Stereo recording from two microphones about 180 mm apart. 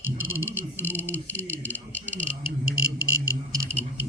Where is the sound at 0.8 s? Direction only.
10° left (ahead or behind).